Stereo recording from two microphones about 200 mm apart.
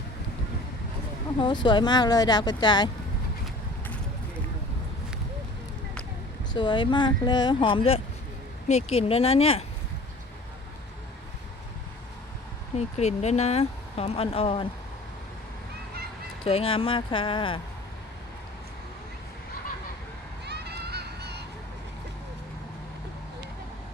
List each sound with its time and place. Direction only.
1.4 s speech: 25° left (ahead or behind)
6.5 s speech: 25° left (ahead or behind)
12.7 s speech: 35° left (ahead or behind)
16.4 s speech: 30° left (ahead or behind)
20.4 s a sound: 55° right (ahead or behind)